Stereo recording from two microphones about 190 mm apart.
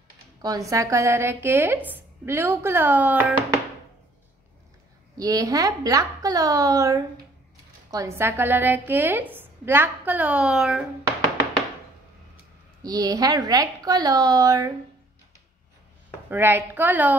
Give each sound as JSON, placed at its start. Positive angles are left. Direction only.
{"t": 0.4, "sound": "a woman's voice", "side_deg": -20}
{"t": 5.1, "sound": "a woman's voice", "side_deg": -20}
{"t": 12.8, "sound": "a woman's voice", "side_deg": -20}
{"t": 16.3, "sound": "a woman's voice", "side_deg": -10}